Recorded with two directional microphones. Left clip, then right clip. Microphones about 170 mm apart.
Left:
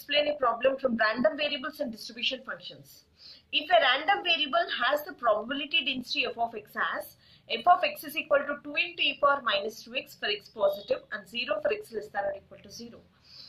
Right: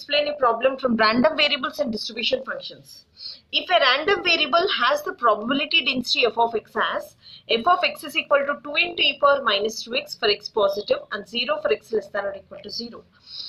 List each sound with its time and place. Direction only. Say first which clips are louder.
0.1 s a woman's voice: right 6 dB; 25° right (ahead or behind)
2.0 s speech: right 8 dB; 20° right (ahead or behind)
3.5 s a woman's voice: right 5 dB; 35° right (ahead or behind)